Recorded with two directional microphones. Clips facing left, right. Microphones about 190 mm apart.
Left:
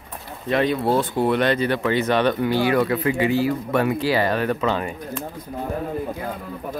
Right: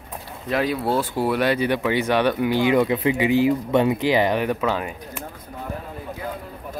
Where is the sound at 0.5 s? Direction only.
5° right (ahead or behind).